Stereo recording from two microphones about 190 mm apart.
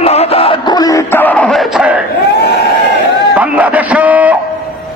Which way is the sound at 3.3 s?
10° right (ahead or behind).